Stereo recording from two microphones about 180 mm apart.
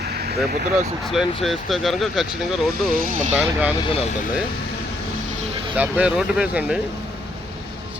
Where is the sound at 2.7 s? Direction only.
55° right (ahead or behind).